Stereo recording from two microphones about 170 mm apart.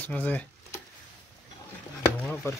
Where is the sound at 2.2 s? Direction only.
5° left (ahead or behind).